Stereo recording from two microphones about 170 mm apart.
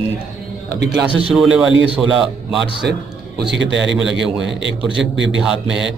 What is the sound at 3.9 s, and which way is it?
Speech, centre (ahead or behind).